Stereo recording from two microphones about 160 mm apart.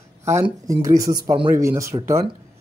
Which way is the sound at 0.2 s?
15° right (ahead or behind).